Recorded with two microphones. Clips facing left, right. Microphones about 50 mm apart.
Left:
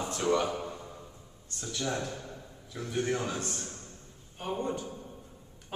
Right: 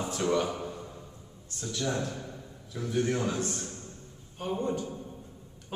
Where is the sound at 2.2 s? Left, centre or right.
Centre.